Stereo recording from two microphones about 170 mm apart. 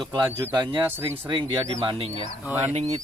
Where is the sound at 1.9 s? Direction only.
35° right (ahead or behind).